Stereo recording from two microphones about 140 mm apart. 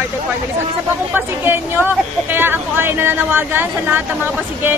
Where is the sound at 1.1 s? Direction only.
15° right (ahead or behind).